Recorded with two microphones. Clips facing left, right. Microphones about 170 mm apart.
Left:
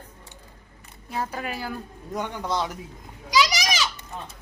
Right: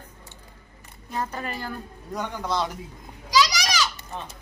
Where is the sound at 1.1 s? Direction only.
10° left (ahead or behind).